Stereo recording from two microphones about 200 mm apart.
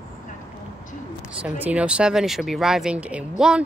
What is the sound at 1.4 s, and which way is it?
Speech, 5° right (ahead or behind).